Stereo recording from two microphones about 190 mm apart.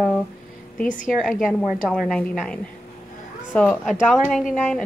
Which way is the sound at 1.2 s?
5° left (ahead or behind).